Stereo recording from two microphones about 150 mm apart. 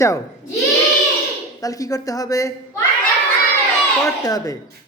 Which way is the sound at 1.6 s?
25° left (ahead or behind).